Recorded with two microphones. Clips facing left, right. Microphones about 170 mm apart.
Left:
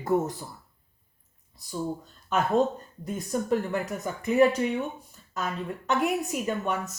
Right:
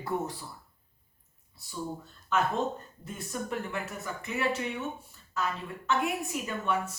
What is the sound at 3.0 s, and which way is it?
Speech, 40° left (ahead or behind).